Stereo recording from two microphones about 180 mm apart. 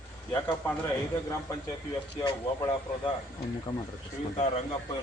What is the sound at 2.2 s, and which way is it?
Speech, 20° left (ahead or behind).